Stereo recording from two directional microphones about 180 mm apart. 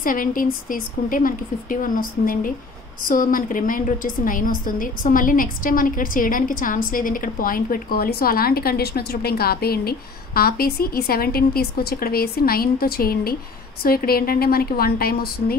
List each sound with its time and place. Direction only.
0.0 s a woman's voice: 50° left (ahead or behind)